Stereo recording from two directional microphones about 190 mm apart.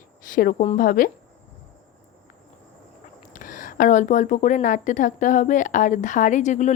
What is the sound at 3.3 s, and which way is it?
A woman's voice, 45° left (ahead or behind).